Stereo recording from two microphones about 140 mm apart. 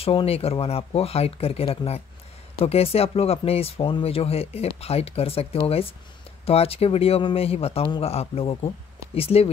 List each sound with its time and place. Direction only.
0.0 s speech: 45° left (ahead or behind)